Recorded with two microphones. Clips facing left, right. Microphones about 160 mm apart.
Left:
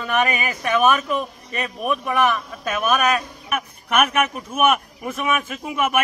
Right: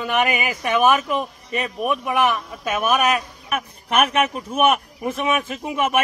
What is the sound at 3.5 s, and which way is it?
A man's voice, 35° right (ahead or behind).